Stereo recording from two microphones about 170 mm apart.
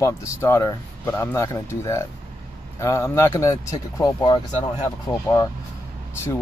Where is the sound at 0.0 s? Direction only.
15° left (ahead or behind).